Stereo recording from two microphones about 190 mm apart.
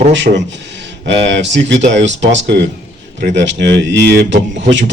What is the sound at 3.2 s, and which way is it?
Speech, 50° right (ahead or behind).